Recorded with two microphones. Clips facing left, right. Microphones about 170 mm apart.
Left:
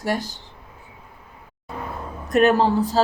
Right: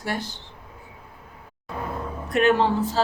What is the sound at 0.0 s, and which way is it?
Speech, 40° left (ahead or behind).